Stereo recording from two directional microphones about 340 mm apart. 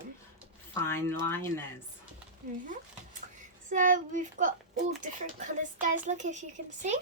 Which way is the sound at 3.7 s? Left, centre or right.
Right.